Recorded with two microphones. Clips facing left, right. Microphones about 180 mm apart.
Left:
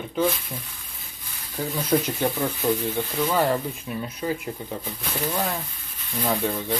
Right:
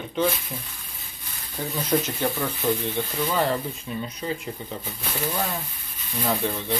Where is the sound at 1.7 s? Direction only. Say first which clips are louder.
Left 1 dB; 10° left (ahead or behind).